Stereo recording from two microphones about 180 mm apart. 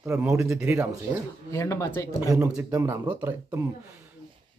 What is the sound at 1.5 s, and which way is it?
Speech, 15° left (ahead or behind).